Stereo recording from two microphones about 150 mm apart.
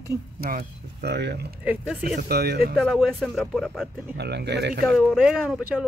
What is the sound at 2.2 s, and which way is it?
Speech, 90° right.